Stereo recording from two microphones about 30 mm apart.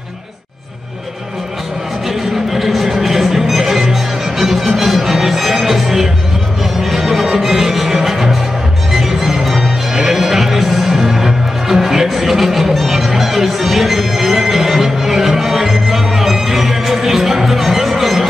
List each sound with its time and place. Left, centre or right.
2.0 s music: centre